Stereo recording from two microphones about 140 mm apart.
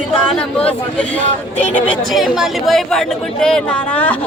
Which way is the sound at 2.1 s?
Centre (ahead or behind).